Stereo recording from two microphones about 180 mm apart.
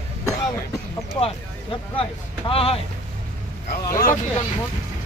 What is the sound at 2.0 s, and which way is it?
Speech, 30° left (ahead or behind).